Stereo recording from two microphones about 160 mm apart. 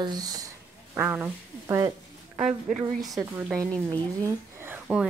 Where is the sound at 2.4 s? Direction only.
40° right (ahead or behind).